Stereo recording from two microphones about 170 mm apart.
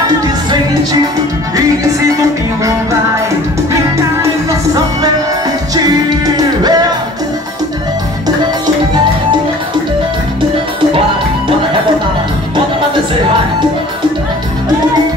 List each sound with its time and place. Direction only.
6.0 s music: 25° right (ahead or behind)